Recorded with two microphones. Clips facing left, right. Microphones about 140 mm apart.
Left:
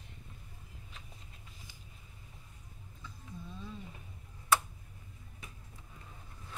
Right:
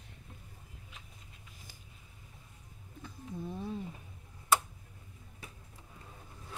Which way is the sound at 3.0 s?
60° right (ahead or behind).